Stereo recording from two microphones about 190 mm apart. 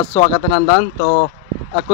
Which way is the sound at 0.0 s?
20° left (ahead or behind).